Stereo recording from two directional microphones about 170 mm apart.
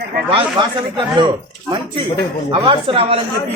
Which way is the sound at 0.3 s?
30° right (ahead or behind).